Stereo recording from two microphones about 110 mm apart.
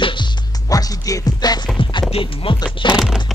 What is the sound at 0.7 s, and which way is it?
Music, 35° left (ahead or behind).